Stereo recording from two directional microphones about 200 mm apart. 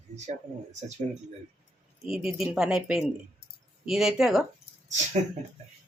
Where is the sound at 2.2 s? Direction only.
Centre (ahead or behind).